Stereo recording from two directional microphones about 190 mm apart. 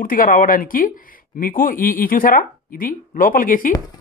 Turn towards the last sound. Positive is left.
turn(degrees=45)  # may be behind; listen again after turning